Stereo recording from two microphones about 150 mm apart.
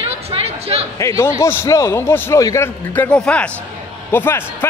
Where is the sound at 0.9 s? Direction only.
20° left (ahead or behind).